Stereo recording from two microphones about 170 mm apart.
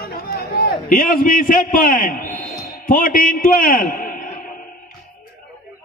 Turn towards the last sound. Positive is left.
turn(degrees=55)  # may be behind; listen again after turning